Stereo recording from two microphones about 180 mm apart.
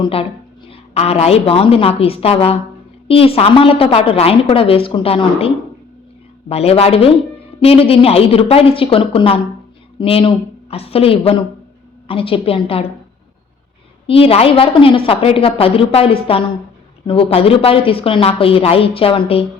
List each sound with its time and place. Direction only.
0.0 s a woman's voice: 30° left (ahead or behind)
6.5 s a woman's voice: 35° left (ahead or behind)
14.1 s a woman's voice: 30° left (ahead or behind)